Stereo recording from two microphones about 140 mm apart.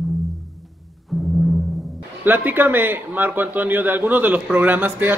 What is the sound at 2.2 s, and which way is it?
A man's voice, 15° right (ahead or behind).